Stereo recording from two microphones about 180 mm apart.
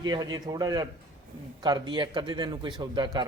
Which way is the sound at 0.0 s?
20° right (ahead or behind).